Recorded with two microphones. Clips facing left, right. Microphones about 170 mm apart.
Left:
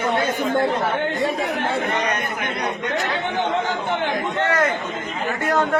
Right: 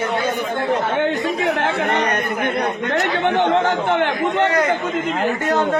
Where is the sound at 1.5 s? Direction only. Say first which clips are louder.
Right 3 dB; 65° right (ahead or behind).